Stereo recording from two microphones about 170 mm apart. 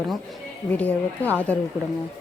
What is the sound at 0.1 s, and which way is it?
Speech, 5° left (ahead or behind).